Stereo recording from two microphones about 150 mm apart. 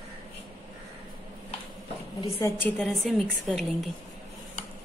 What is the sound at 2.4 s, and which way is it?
Speech, 20° left (ahead or behind).